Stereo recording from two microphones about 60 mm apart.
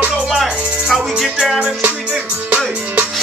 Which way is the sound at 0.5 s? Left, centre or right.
Centre.